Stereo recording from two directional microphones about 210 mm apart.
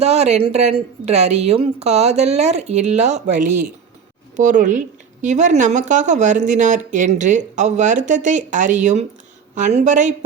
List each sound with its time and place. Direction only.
0.0 s a woman's voice: 30° right (ahead or behind)
4.4 s a woman's voice: 35° right (ahead or behind)